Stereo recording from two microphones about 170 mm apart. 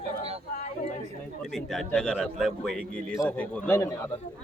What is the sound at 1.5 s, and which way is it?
Speech, centre (ahead or behind).